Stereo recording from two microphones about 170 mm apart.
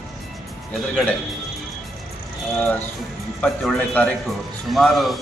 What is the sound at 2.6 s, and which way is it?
A man's voice, 10° left (ahead or behind).